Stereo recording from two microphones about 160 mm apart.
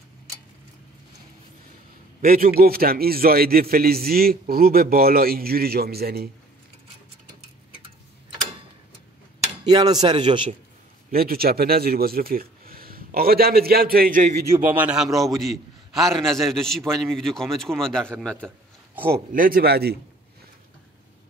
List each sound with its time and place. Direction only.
2.2 s a man's voice: 65° right (ahead or behind)
9.7 s speech: 25° right (ahead or behind)
11.1 s speech: 70° right (ahead or behind)
14.7 s a man's voice: 10° right (ahead or behind)
19.3 s a man's voice: 60° right (ahead or behind); by 20.0 s 80° right